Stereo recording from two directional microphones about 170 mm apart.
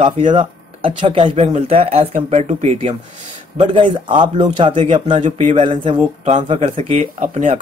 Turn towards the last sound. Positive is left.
turn(degrees=-40)  # may be behind; listen again after turning